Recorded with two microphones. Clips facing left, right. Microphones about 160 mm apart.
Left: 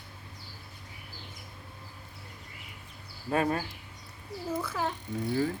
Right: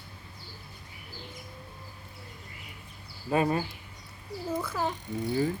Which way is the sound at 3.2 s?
10° right (ahead or behind).